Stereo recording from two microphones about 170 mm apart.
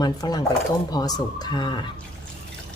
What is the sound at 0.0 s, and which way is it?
Speech, 25° left (ahead or behind).